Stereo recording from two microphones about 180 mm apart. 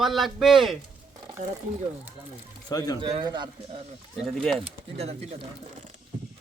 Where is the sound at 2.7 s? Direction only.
20° left (ahead or behind).